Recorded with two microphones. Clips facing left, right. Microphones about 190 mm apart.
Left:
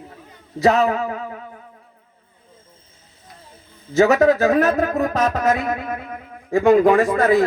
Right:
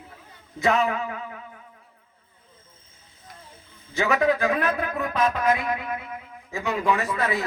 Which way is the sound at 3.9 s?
40° left (ahead or behind).